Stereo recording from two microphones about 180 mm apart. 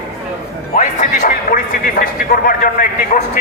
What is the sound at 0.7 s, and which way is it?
Speech, 45° left (ahead or behind).